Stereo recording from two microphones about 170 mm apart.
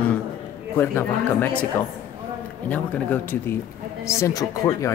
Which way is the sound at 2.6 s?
10° left (ahead or behind).